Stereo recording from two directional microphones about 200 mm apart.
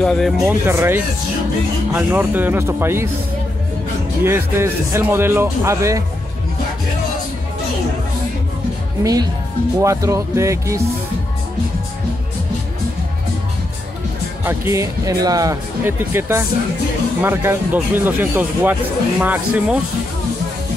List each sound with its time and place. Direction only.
0.0 s speech: 5° left (ahead or behind)
0.4 s speech: 10° right (ahead or behind)
4.2 s speech: 10° right (ahead or behind)
9.8 s speech: 15° right (ahead or behind)
14.4 s speech: 10° right (ahead or behind)